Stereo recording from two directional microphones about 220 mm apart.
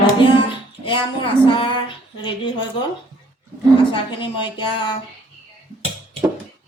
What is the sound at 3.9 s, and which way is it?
Speech, 20° left (ahead or behind).